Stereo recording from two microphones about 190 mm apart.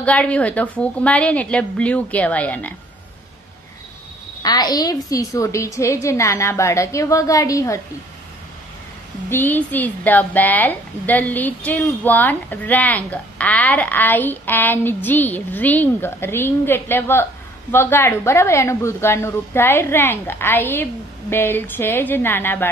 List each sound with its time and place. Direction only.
0.0 s a woman's voice: 5° left (ahead or behind)
4.4 s a woman's voice: 20° left (ahead or behind)
9.3 s a woman's voice: 10° left (ahead or behind)